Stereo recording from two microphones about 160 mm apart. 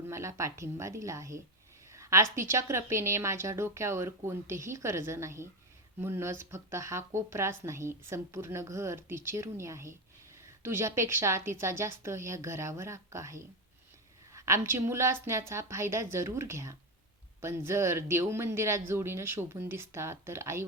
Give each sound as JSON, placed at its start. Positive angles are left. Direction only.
{"t": 0.1, "sound": "speech", "side_deg": -20}